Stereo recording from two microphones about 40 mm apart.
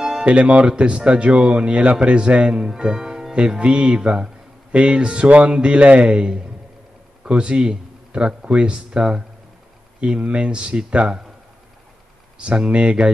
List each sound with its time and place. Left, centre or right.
0.2 s speech: right
12.4 s speech: right